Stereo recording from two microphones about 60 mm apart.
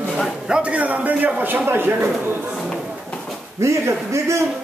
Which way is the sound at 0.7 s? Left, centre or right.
Right.